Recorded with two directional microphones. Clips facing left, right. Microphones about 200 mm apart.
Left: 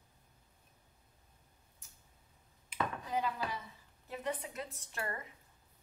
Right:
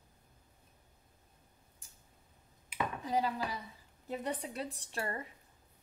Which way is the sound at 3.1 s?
35° right (ahead or behind).